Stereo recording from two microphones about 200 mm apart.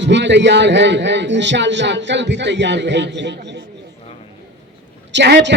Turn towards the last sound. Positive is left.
turn(degrees=-60)  # may be behind; listen again after turning